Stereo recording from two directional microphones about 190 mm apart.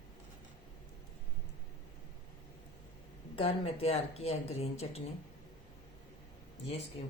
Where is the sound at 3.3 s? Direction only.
30° left (ahead or behind).